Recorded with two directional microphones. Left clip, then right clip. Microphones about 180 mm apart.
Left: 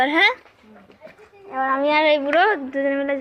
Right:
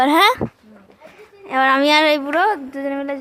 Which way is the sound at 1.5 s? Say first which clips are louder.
Right 6 dB; 90° right.